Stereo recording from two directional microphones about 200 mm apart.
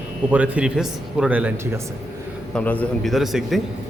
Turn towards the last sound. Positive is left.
turn(degrees=0)  # may be behind; listen again after turning